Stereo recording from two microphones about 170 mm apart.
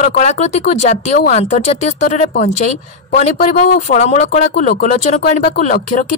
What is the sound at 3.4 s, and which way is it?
Speech, 55° left (ahead or behind).